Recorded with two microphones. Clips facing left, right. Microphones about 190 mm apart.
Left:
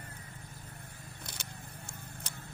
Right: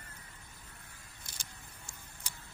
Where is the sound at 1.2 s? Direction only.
60° left (ahead or behind).